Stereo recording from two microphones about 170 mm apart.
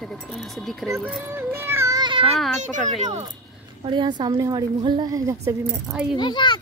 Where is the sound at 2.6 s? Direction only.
45° right (ahead or behind).